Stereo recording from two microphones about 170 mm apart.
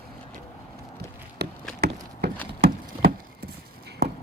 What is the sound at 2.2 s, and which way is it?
Horse, 70° right (ahead or behind).